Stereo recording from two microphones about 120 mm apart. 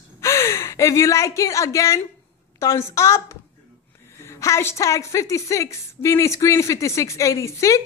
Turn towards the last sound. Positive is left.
turn(degrees=25)  # may be behind; listen again after turning